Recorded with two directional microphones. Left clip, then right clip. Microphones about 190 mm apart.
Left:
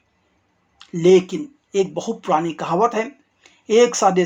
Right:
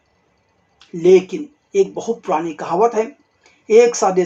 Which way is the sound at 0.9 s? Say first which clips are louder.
Right 2 dB; 30° left (ahead or behind).